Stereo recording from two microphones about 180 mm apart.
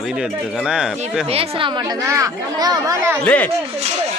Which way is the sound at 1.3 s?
35° right (ahead or behind).